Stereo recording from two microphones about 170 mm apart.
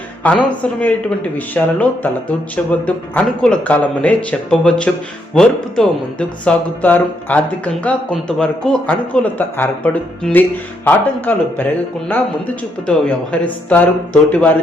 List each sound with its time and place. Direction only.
0.2 s speech: 10° left (ahead or behind)